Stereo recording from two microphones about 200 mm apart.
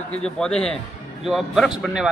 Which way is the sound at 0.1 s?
5° left (ahead or behind).